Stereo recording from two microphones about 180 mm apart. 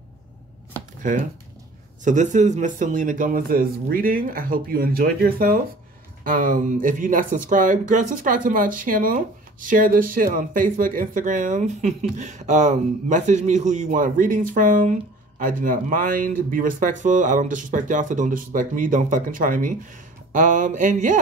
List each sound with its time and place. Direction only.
1.0 s speech: 45° right (ahead or behind)